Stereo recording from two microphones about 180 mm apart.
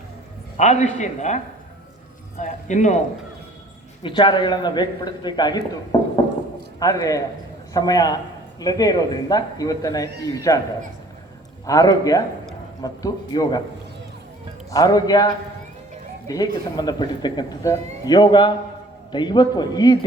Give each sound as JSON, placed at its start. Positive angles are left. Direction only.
{"t": 0.5, "sound": "speech", "side_deg": 40}
{"t": 2.4, "sound": "speech", "side_deg": 40}
{"t": 4.0, "sound": "a man's voice", "side_deg": 25}
{"t": 11.6, "sound": "speech", "side_deg": 20}
{"t": 14.7, "sound": "speech", "side_deg": 20}